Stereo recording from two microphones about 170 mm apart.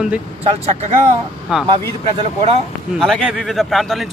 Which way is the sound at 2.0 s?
35° right (ahead or behind).